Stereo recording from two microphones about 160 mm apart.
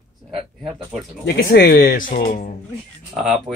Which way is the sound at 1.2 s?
80° left.